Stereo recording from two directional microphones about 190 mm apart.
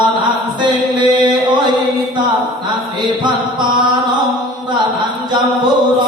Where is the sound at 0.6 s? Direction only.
25° right (ahead or behind).